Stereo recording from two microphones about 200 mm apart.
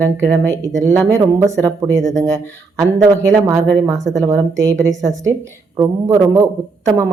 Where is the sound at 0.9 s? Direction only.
15° right (ahead or behind).